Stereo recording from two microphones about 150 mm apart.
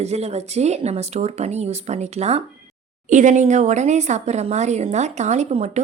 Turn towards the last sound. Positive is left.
turn(degrees=-45)  # may be behind; listen again after turning